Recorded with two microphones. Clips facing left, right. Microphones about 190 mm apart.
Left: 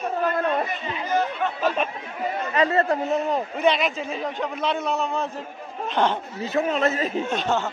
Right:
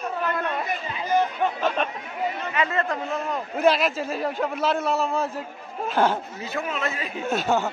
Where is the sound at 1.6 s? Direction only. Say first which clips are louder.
Left 4 dB; 5° left (ahead or behind).